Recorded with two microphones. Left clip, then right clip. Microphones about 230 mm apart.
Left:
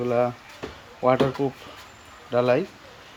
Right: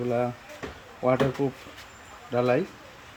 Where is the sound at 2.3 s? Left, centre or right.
Centre.